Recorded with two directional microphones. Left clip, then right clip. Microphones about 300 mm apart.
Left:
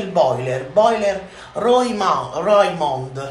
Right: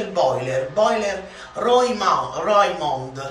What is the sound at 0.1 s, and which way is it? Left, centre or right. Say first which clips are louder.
A man's voice: left 3 dB; centre.